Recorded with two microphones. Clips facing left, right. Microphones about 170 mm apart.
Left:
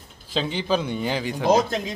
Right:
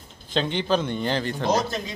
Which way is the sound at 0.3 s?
5° left (ahead or behind).